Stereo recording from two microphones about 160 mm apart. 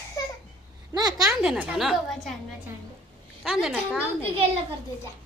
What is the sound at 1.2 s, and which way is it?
A woman's voice, 5° right (ahead or behind).